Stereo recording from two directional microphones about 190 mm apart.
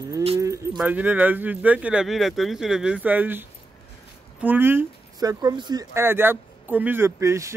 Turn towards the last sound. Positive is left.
turn(degrees=-15)  # may be behind; listen again after turning